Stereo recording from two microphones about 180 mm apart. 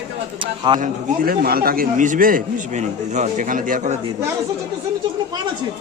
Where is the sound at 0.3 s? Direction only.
30° right (ahead or behind).